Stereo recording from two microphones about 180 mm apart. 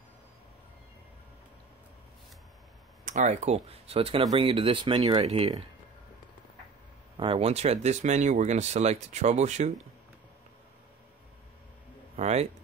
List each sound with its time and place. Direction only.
3.1 s speech: 45° right (ahead or behind)
7.2 s speech: 30° right (ahead or behind)
12.2 s speech: 35° right (ahead or behind)